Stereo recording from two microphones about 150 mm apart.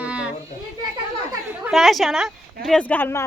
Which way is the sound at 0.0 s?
10° right (ahead or behind).